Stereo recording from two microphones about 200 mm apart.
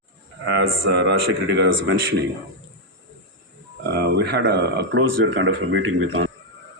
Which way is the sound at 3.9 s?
55° right (ahead or behind).